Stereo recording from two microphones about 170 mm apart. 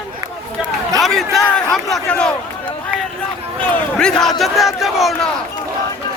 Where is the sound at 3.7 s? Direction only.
5° left (ahead or behind).